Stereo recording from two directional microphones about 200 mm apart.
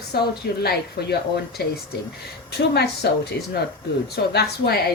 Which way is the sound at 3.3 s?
55° left (ahead or behind).